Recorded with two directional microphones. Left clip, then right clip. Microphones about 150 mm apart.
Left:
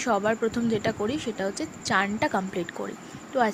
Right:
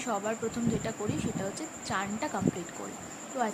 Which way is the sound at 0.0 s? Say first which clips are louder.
Left 8 dB; 40° left (ahead or behind).